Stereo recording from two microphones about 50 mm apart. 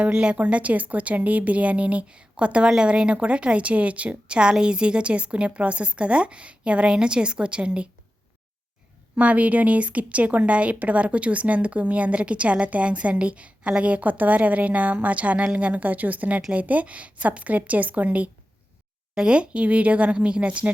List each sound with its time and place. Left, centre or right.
0.0 s speech: right
9.1 s speech: right